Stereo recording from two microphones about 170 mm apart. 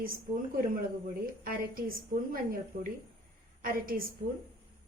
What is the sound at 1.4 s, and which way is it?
A woman's voice, 60° right (ahead or behind).